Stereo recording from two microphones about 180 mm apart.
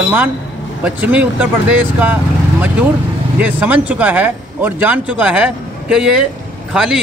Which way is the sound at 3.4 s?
10° right (ahead or behind).